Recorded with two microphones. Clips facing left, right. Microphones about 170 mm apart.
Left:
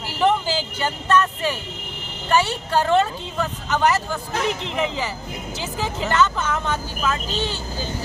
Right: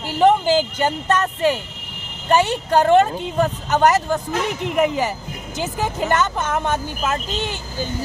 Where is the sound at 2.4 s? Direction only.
15° right (ahead or behind).